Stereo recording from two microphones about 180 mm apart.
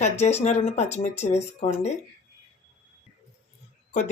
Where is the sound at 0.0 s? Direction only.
35° left (ahead or behind).